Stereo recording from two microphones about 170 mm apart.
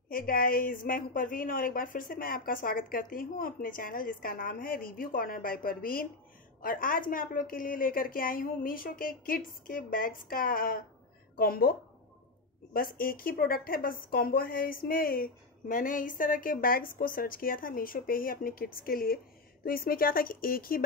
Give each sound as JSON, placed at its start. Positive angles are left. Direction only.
{"t": 0.1, "sound": "speech", "side_deg": 55}
{"t": 12.7, "sound": "speech", "side_deg": 60}